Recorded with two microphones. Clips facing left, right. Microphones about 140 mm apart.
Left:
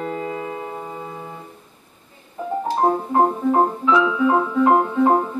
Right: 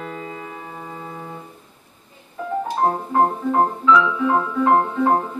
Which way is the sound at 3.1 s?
20° left (ahead or behind).